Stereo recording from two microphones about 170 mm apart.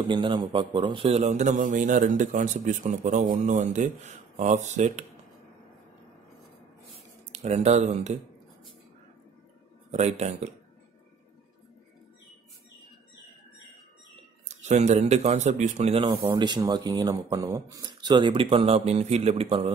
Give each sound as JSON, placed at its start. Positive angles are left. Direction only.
{"t": 0.1, "sound": "speech", "side_deg": -30}
{"t": 7.3, "sound": "speech", "side_deg": -40}
{"t": 9.8, "sound": "speech", "side_deg": -40}
{"t": 14.5, "sound": "speech", "side_deg": -40}
{"t": 16.3, "sound": "speech", "side_deg": -25}